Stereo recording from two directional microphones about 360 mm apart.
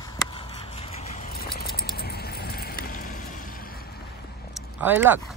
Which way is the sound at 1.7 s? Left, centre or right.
Left.